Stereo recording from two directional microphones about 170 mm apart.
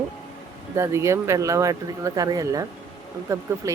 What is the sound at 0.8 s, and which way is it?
Speech, 15° right (ahead or behind).